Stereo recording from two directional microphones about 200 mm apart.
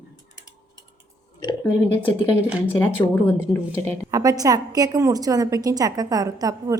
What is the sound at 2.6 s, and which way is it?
Speech, 10° left (ahead or behind).